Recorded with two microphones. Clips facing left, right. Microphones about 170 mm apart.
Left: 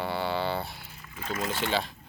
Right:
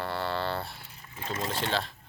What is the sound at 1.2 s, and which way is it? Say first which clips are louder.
Speech: left 1 dB; 25° right (ahead or behind).